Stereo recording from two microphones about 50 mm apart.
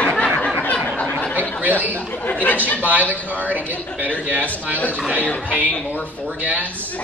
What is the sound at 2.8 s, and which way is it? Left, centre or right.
A man's voice, right.